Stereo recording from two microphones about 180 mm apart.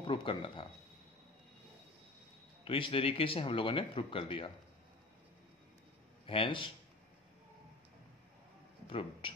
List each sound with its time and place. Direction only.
0.0 s speech: 30° left (ahead or behind)
2.6 s speech: 30° left (ahead or behind)
6.2 s speech: 30° left (ahead or behind)
8.8 s speech: 30° left (ahead or behind)